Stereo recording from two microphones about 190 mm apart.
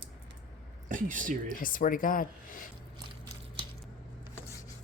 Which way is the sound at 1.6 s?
45° left (ahead or behind).